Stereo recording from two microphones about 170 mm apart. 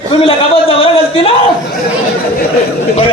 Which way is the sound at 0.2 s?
35° left (ahead or behind).